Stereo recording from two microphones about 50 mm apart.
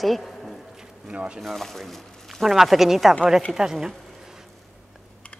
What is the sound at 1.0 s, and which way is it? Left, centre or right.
Speech, right.